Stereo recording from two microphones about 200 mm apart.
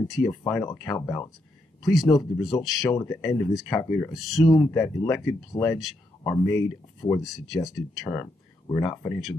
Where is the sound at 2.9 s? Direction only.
15° left (ahead or behind).